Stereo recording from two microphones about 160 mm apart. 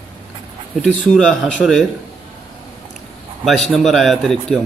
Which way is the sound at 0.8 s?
Centre (ahead or behind).